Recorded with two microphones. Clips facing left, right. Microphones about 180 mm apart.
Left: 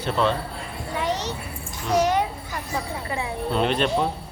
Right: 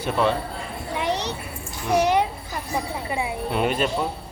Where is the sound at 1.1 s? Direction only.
65° right (ahead or behind).